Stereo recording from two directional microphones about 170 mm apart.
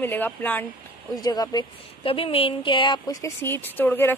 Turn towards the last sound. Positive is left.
turn(degrees=10)  # may be behind; listen again after turning